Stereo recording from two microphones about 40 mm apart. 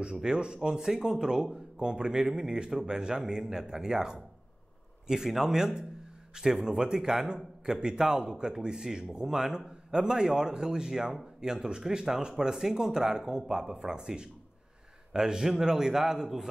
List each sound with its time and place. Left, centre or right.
0.0 s speech: centre